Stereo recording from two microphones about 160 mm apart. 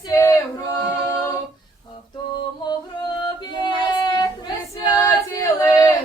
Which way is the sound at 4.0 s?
25° left (ahead or behind).